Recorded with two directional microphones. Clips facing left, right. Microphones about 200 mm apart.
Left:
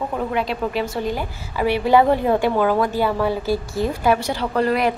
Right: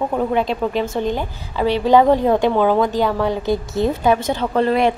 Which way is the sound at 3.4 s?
20° right (ahead or behind).